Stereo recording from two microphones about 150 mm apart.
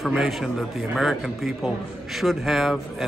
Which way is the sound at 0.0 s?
Centre (ahead or behind).